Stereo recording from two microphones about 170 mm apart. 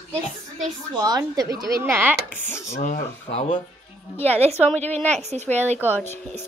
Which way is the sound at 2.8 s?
45° left (ahead or behind).